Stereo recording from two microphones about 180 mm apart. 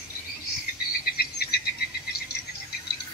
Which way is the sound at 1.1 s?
60° left (ahead or behind).